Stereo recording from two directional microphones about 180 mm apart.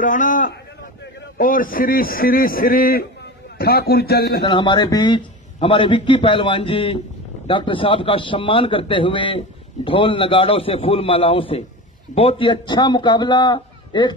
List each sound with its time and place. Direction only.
0.0 s a man's voice: 45° left (ahead or behind)
4.5 s a man's voice: 25° left (ahead or behind)